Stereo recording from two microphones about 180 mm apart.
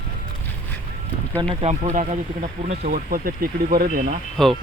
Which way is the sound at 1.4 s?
35° right (ahead or behind).